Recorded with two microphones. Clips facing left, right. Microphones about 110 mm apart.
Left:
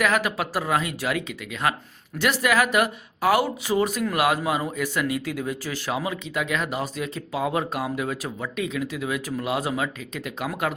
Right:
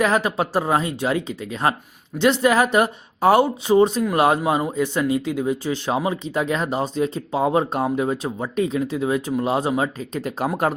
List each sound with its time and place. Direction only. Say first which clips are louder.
0.0 s a man's voice: right 4 dB; 30° right (ahead or behind)